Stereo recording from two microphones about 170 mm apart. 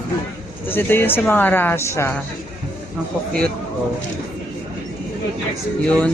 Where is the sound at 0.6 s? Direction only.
10° left (ahead or behind).